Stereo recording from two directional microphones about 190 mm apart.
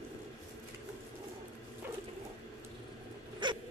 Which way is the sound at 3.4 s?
25° right (ahead or behind).